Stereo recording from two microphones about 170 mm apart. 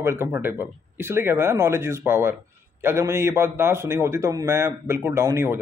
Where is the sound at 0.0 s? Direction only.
15° right (ahead or behind).